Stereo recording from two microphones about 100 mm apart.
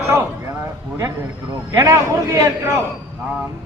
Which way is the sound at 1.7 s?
35° right (ahead or behind).